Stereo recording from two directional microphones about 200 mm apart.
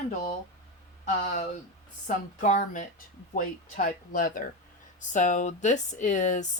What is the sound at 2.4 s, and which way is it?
Speech, 40° left (ahead or behind).